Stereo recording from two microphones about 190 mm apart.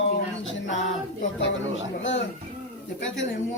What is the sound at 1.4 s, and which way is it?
A man's voice, 75° left (ahead or behind).